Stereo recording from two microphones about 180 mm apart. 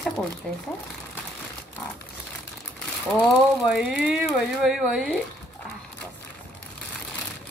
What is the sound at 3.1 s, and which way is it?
Speech, centre (ahead or behind).